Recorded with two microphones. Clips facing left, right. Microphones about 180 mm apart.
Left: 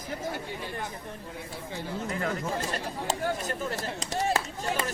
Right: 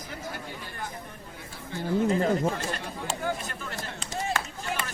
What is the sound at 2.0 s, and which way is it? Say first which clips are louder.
Speech: right 7 dB; 30° right (ahead or behind).